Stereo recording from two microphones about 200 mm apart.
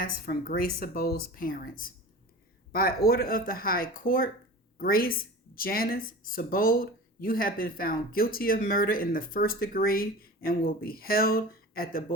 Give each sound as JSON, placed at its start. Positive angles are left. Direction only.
{"t": 0.0, "sound": "speech", "side_deg": 45}
{"t": 2.7, "sound": "speech", "side_deg": 50}